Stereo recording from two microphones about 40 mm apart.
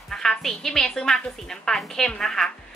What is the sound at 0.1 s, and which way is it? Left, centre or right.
Music, centre.